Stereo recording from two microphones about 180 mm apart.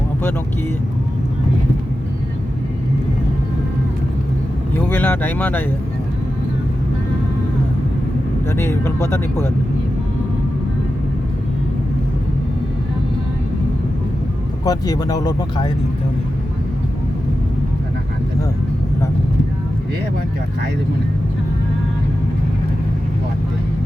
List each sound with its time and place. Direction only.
4.9 s speech: 10° left (ahead or behind)
8.4 s speech: 15° left (ahead or behind)
14.6 s speech: 20° left (ahead or behind)